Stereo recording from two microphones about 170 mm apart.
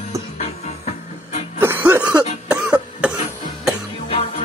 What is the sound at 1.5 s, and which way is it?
Music, 15° right (ahead or behind).